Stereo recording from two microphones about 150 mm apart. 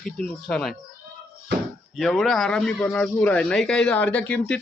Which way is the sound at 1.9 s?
Centre (ahead or behind).